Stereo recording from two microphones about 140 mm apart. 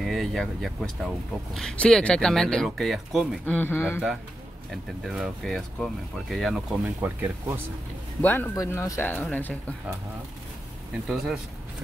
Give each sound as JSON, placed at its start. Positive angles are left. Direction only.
{"t": 0.0, "sound": "speech", "side_deg": 0}
{"t": 3.4, "sound": "speech", "side_deg": 15}
{"t": 5.0, "sound": "speech", "side_deg": -5}
{"t": 8.2, "sound": "speech", "side_deg": 10}